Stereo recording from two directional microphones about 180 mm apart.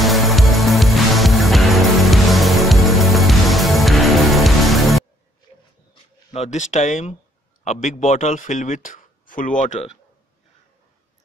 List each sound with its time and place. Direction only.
0.0 s music: centre (ahead or behind)
6.3 s speech: 40° left (ahead or behind)